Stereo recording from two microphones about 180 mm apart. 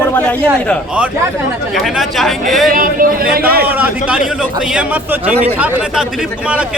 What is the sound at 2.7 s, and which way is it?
Speech, 50° right (ahead or behind).